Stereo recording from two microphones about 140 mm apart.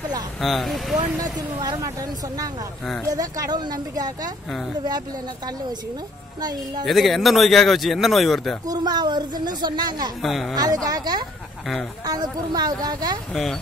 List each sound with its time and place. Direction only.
0.4 s a man's voice: centre (ahead or behind)
0.9 s speech: 30° right (ahead or behind)
2.8 s a man's voice: 5° left (ahead or behind)
3.1 s speech: 25° right (ahead or behind)
6.4 s speech: 30° right (ahead or behind)
6.9 s a man's voice: centre (ahead or behind)
8.6 s speech: 30° right (ahead or behind)
10.2 s a man's voice: centre (ahead or behind)
10.5 s speech: 25° right (ahead or behind)
13.3 s a man's voice: centre (ahead or behind)